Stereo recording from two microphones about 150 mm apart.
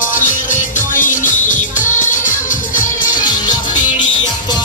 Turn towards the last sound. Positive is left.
turn(degrees=25)  # may be behind; listen again after turning